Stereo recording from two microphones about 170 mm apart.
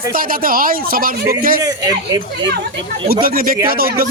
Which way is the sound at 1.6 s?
20° right (ahead or behind).